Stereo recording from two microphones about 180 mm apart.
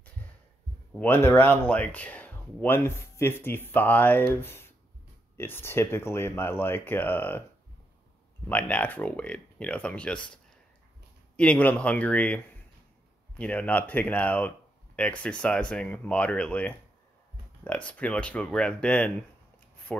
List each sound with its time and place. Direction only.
0.9 s speech: 10° left (ahead or behind)
8.5 s speech: 5° left (ahead or behind)
13.4 s speech: 5° left (ahead or behind)